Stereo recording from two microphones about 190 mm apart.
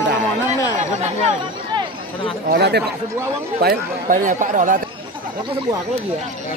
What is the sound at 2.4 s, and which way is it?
Speech, 60° right (ahead or behind).